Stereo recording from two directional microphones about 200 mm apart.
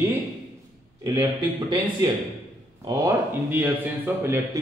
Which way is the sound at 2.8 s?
20° right (ahead or behind).